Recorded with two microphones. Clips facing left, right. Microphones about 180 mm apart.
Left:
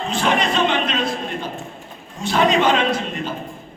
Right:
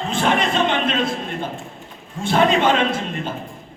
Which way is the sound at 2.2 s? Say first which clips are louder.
Even; 50° right (ahead or behind).